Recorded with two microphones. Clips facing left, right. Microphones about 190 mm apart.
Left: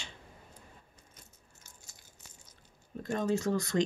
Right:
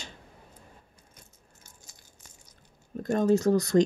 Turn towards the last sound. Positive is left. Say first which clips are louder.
# right 8 dB
turn(degrees=-40)  # may be behind; listen again after turning